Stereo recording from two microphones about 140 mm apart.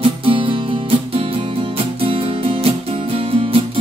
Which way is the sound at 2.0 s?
40° right (ahead or behind).